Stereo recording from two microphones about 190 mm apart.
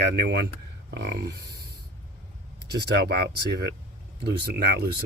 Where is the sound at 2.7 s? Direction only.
60° right (ahead or behind).